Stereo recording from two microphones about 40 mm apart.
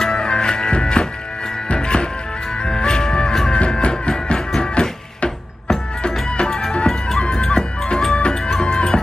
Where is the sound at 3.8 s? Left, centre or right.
Left.